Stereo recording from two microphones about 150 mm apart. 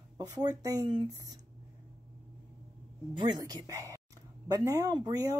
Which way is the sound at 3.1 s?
30° right (ahead or behind).